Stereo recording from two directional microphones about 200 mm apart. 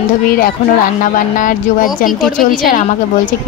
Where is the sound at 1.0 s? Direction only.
40° left (ahead or behind).